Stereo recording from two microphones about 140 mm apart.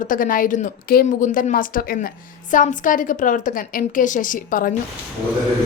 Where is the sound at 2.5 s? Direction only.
70° left (ahead or behind).